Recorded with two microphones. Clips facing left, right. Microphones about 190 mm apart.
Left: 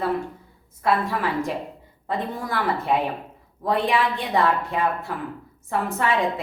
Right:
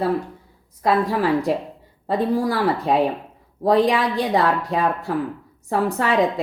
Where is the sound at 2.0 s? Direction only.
35° right (ahead or behind).